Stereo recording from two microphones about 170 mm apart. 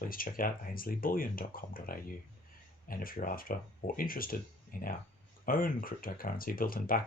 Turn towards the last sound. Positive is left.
turn(degrees=55)  # may be behind; listen again after turning